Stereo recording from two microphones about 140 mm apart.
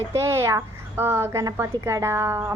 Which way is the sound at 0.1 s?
20° right (ahead or behind).